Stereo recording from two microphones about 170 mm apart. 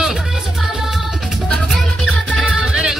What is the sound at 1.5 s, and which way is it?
Music, centre (ahead or behind).